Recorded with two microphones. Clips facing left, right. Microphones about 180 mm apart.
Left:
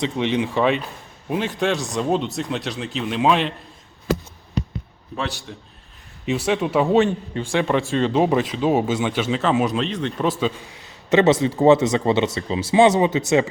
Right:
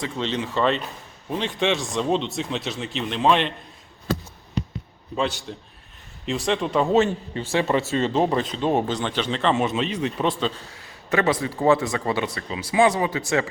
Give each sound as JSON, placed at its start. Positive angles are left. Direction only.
{"t": 0.0, "sound": "speech", "side_deg": 15}
{"t": 6.2, "sound": "speech", "side_deg": 5}
{"t": 10.2, "sound": "a man's voice", "side_deg": 5}